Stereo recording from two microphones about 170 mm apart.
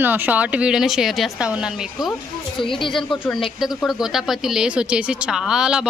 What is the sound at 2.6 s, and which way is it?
Speech, 30° left (ahead or behind).